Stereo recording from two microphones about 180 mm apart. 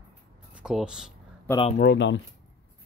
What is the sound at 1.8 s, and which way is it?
Speech, 70° left (ahead or behind).